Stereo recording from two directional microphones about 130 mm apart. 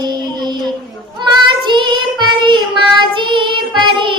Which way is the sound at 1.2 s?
35° right (ahead or behind).